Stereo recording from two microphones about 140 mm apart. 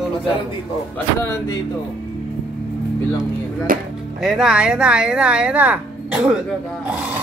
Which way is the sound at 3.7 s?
80° right.